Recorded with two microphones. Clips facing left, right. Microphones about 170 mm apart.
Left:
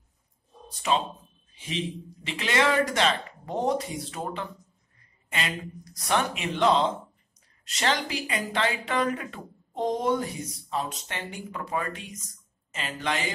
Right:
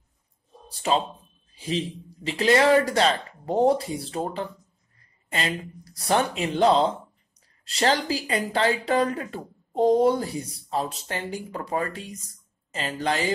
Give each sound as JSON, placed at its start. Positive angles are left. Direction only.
{"t": 0.7, "sound": "speech", "side_deg": -35}